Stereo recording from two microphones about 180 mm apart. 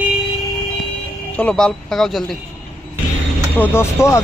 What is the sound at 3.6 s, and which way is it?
Speech, 15° left (ahead or behind).